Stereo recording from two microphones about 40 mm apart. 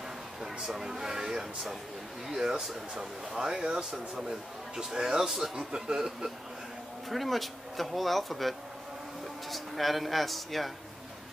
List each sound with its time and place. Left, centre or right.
0.7 s speech: centre
7.1 s speech: centre